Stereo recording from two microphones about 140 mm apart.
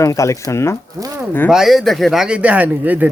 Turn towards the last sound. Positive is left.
turn(degrees=-10)  # may be behind; listen again after turning